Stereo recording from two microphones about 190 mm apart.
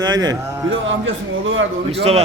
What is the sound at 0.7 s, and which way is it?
A man's voice, 85° right.